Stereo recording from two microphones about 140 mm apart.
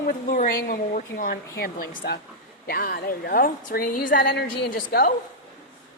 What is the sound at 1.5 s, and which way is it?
A woman's voice, 90° left.